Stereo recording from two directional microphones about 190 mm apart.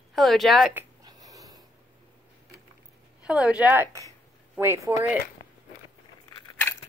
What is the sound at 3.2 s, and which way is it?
A woman's voice, 5° right (ahead or behind).